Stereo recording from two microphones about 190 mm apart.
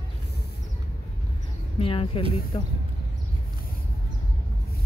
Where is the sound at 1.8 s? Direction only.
30° left (ahead or behind).